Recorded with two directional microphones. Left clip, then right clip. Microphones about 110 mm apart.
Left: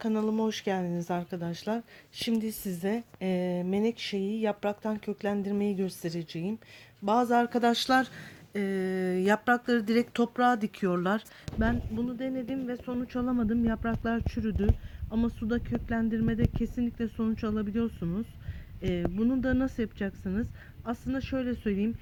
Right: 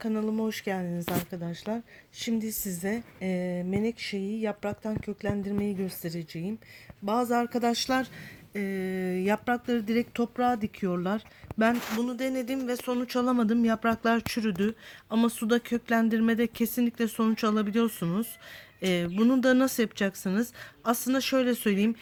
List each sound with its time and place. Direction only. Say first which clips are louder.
0.0 s speech: left 1 dB; 10° left (ahead or behind)
11.6 s speech: right 5 dB; 40° right (ahead or behind)